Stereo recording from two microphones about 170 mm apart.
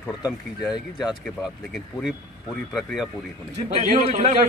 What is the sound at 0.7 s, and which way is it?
Speech, 25° left (ahead or behind).